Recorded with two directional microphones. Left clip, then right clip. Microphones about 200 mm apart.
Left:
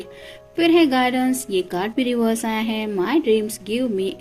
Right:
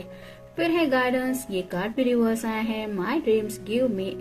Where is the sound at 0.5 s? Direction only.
45° left (ahead or behind).